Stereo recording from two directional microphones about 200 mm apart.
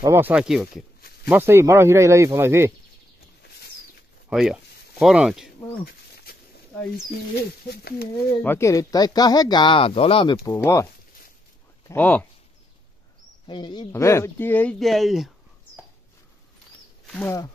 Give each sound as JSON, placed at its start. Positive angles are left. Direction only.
{"t": 0.0, "sound": "speech", "side_deg": -10}
{"t": 1.3, "sound": "speech", "side_deg": -10}
{"t": 3.4, "sound": "a sound", "side_deg": 55}
{"t": 4.3, "sound": "speech", "side_deg": 0}
{"t": 7.7, "sound": "speech", "side_deg": 50}
{"t": 8.4, "sound": "speech", "side_deg": 10}
{"t": 11.9, "sound": "speech", "side_deg": 10}
{"t": 13.5, "sound": "speech", "side_deg": 20}
{"t": 17.0, "sound": "speech", "side_deg": 5}